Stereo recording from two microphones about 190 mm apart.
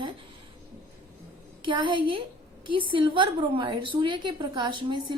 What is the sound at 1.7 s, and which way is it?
A woman's voice, 25° right (ahead or behind).